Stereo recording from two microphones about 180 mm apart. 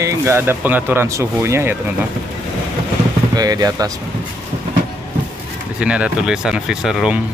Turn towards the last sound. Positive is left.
turn(degrees=-5)  # may be behind; listen again after turning